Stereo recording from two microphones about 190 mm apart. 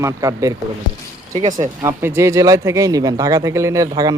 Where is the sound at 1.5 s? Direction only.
15° right (ahead or behind).